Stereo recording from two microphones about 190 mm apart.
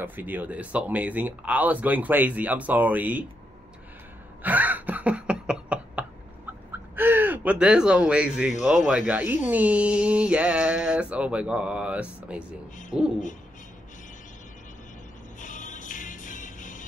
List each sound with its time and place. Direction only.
0.0 s speech: 10° right (ahead or behind)
4.4 s a sound: 10° right (ahead or behind)
7.0 s speech: 10° right (ahead or behind)
12.9 s owl: 5° right (ahead or behind)
15.4 s music: 40° left (ahead or behind)